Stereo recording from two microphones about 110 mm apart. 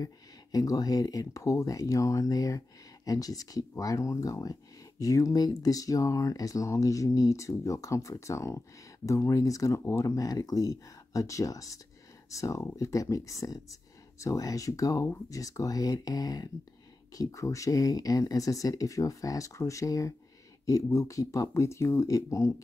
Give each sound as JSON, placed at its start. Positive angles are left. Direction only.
{"t": 0.0, "sound": "speech", "side_deg": 35}